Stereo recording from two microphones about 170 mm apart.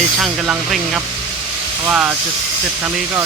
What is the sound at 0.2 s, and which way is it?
Speech, centre (ahead or behind).